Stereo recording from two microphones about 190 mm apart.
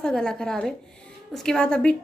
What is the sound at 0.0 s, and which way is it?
A woman's voice, 5° left (ahead or behind).